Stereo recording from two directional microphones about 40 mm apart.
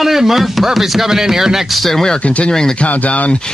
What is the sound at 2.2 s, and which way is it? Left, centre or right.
Speech, left.